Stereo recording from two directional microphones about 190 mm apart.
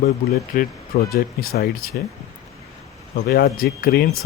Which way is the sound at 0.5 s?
50° left (ahead or behind).